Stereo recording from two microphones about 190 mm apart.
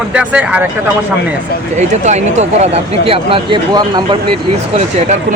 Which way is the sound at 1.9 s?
40° right (ahead or behind).